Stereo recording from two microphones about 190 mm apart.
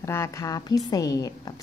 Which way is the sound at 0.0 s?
15° left (ahead or behind).